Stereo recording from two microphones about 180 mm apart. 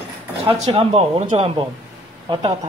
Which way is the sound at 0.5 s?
30° right (ahead or behind).